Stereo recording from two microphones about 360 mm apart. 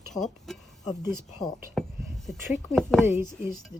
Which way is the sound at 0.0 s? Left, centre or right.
Centre.